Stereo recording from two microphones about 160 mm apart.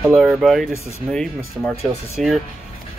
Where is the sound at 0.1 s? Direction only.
Centre (ahead or behind).